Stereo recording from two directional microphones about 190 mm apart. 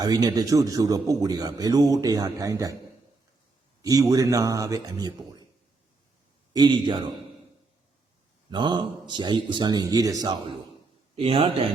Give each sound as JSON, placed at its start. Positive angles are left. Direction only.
{"t": 0.0, "sound": "a man's voice", "side_deg": -20}
{"t": 3.8, "sound": "speech", "side_deg": -20}
{"t": 6.5, "sound": "a man's voice", "side_deg": -25}
{"t": 8.4, "sound": "a man's voice", "side_deg": -25}